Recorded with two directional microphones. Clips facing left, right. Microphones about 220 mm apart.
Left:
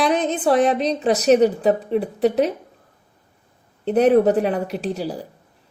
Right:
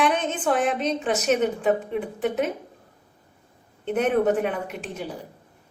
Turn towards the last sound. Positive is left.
turn(degrees=35)  # may be behind; listen again after turning